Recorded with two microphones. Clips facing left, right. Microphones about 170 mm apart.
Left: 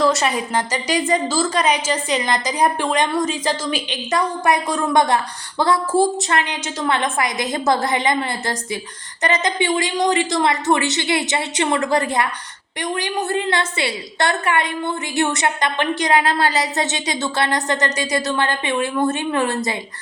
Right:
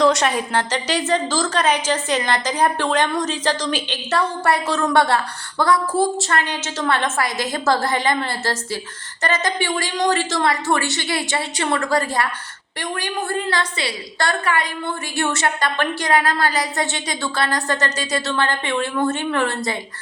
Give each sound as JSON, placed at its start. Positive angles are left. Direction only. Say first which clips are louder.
{"t": 0.0, "sound": "a woman's voice", "louder": "right 1 dB", "side_deg": 5}